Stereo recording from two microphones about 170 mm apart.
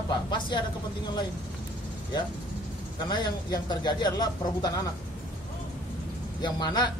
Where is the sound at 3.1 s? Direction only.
25° left (ahead or behind).